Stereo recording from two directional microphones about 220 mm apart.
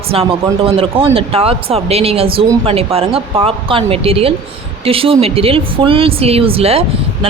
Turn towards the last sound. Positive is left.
turn(degrees=-25)  # may be behind; listen again after turning